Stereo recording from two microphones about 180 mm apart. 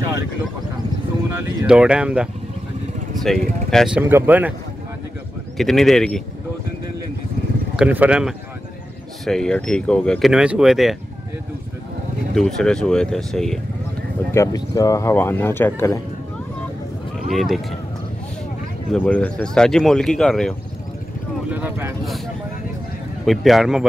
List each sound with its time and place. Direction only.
1.7 s speech: 5° right (ahead or behind)
3.3 s speech: centre (ahead or behind)
4.0 s speech: 10° right (ahead or behind)
5.6 s speech: centre (ahead or behind)
7.7 s speech: 5° right (ahead or behind)
12.4 s speech: 5° left (ahead or behind)
14.3 s speech: 15° left (ahead or behind)
17.3 s speech: centre (ahead or behind)
18.9 s speech: 5° left (ahead or behind)
21.5 s speech: 10° right (ahead or behind)
23.2 s speech: centre (ahead or behind)